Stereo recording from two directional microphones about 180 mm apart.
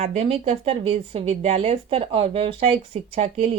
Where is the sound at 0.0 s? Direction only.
35° right (ahead or behind).